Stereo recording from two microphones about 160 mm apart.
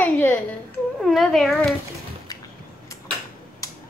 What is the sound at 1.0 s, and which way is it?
Speech, centre (ahead or behind).